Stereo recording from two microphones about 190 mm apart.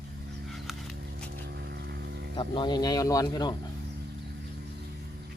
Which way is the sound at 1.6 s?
60° right (ahead or behind).